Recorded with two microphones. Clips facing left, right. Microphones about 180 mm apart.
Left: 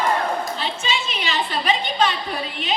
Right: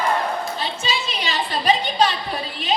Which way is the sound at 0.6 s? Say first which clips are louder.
Even; 35° right (ahead or behind).